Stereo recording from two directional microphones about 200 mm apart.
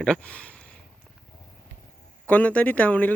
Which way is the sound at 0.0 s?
5° left (ahead or behind).